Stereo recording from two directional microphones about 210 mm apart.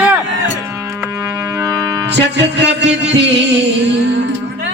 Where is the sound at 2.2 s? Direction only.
55° right (ahead or behind).